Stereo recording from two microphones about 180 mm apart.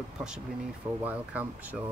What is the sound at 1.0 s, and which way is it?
Speech, 10° right (ahead or behind).